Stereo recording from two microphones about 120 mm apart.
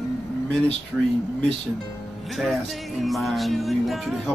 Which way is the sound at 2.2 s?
Centre (ahead or behind).